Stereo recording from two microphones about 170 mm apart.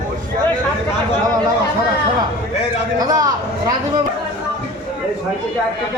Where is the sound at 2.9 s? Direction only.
20° right (ahead or behind).